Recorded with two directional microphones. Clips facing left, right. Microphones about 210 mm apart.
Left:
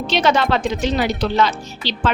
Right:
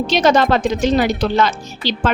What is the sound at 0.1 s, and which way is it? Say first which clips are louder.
A woman's voice: right 3 dB; 40° right (ahead or behind).